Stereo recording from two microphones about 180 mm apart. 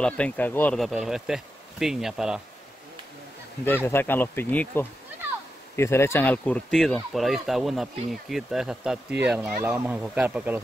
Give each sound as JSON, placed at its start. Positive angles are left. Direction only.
{"t": 0.0, "sound": "speech", "side_deg": 5}
{"t": 3.6, "sound": "speech", "side_deg": 10}